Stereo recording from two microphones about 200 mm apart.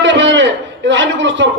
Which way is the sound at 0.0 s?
65° right (ahead or behind).